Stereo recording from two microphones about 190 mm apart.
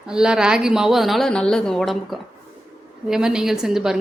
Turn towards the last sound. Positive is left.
turn(degrees=0)  # may be behind; listen again after turning